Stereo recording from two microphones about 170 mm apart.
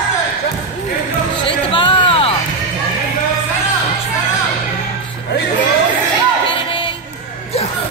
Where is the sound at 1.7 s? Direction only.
30° left (ahead or behind).